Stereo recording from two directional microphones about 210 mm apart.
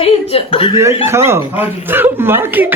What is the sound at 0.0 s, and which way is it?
Speech, 25° left (ahead or behind).